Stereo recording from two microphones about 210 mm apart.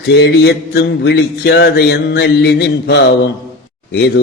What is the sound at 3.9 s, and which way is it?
Speech, 55° left (ahead or behind).